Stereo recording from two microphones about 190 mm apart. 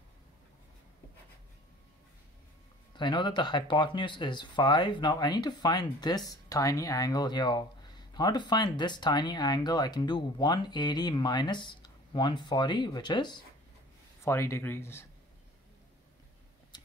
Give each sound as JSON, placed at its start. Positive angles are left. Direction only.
{"t": 3.0, "sound": "speech", "side_deg": 25}